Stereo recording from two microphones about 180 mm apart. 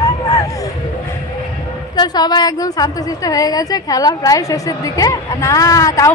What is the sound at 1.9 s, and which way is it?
A woman's voice, 20° left (ahead or behind).